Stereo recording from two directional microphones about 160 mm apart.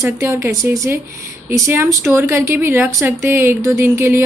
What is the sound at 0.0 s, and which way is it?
A woman's voice, 15° right (ahead or behind).